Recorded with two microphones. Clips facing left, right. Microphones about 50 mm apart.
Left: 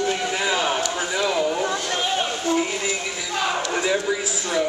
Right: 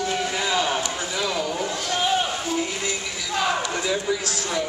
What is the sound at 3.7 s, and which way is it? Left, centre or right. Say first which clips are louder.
Speech: left 2 dB; centre.